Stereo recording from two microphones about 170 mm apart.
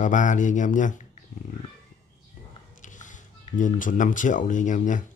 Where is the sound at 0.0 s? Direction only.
45° left (ahead or behind).